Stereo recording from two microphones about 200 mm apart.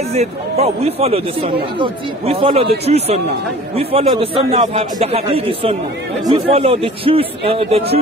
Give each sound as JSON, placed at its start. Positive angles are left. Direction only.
{"t": 0.1, "sound": "a man's voice", "side_deg": -35}